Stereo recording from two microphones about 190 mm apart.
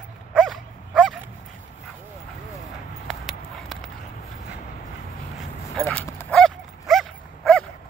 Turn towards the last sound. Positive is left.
turn(degrees=0)  # may be behind; listen again after turning